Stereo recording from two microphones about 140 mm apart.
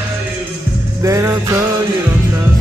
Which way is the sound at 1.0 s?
20° right (ahead or behind).